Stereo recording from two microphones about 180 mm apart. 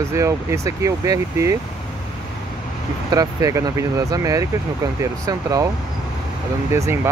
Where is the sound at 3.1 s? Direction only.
20° right (ahead or behind).